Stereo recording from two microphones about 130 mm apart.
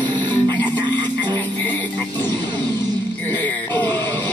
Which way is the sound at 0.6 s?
35° right (ahead or behind).